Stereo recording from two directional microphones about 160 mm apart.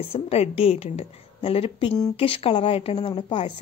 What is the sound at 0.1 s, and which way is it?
Speech, 40° left (ahead or behind).